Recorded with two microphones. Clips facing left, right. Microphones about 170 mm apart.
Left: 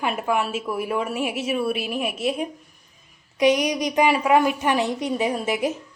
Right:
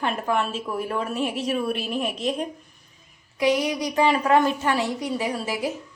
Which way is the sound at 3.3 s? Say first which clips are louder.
Left 3 dB; 20° left (ahead or behind).